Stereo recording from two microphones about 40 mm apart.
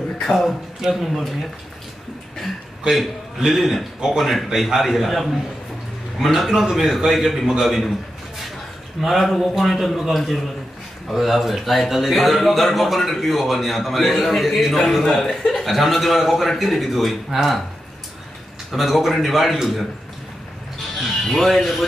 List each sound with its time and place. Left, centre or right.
0.3 s a man's voice: centre
0.7 s a man's voice: centre
2.9 s a man's voice: centre
9.0 s a man's voice: centre
18.7 s a man's voice: centre
21.0 s a man's voice: centre